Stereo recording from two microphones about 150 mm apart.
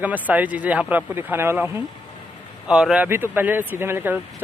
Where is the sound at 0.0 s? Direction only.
10° right (ahead or behind).